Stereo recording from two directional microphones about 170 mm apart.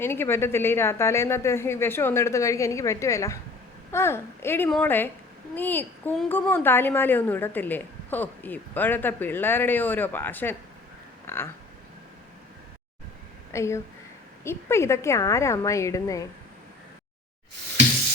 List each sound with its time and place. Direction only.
0.0 s a woman's voice: 15° left (ahead or behind)
13.5 s a woman's voice: 15° left (ahead or behind)